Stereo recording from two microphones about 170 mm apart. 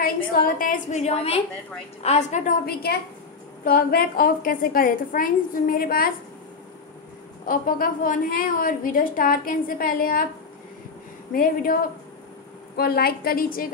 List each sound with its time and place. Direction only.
0.0 s a woman's voice: 55° left (ahead or behind)
2.6 s a woman's voice: 70° left (ahead or behind)
7.4 s a woman's voice: 55° left (ahead or behind)
11.3 s a woman's voice: 60° left (ahead or behind)